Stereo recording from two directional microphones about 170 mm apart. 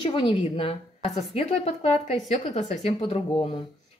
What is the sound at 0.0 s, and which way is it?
A woman's voice, 35° left (ahead or behind).